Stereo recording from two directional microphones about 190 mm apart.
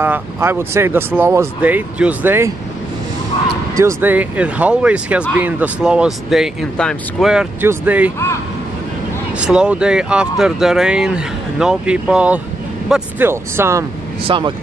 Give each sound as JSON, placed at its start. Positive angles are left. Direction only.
{"t": 0.0, "sound": "speech", "side_deg": -10}
{"t": 3.7, "sound": "speech", "side_deg": -15}
{"t": 9.4, "sound": "speech", "side_deg": -5}
{"t": 14.2, "sound": "speech", "side_deg": -25}